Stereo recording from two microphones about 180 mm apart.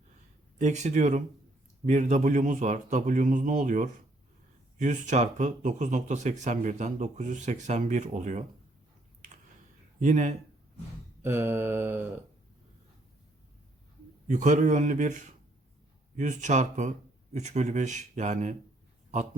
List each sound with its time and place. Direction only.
0.6 s a man's voice: 40° right (ahead or behind)
10.0 s a man's voice: 45° right (ahead or behind)
11.2 s mantra: 15° right (ahead or behind)
14.3 s speech: 40° right (ahead or behind)